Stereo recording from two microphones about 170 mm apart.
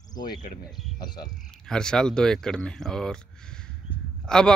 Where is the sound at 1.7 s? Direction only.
5° left (ahead or behind).